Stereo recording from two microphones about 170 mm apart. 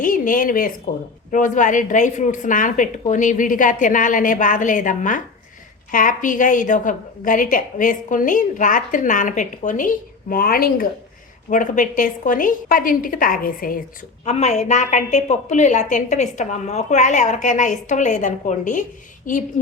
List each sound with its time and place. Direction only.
0.0 s a woman's voice: 55° left (ahead or behind)
11.5 s a woman's voice: 50° left (ahead or behind)
14.3 s a woman's voice: 40° left (ahead or behind)